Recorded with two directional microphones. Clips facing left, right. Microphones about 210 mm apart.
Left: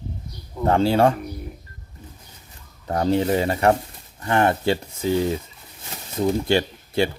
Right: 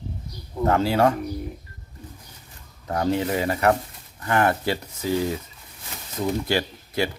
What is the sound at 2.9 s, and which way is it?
Speech, 30° left (ahead or behind).